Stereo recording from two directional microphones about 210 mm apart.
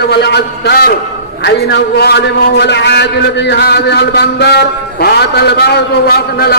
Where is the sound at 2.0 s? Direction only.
50° left (ahead or behind).